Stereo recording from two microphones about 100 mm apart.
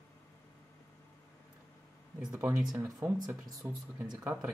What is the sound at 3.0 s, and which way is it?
Speech, 25° right (ahead or behind).